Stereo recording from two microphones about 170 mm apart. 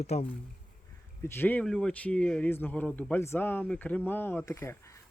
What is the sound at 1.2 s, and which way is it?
Speech, 15° left (ahead or behind).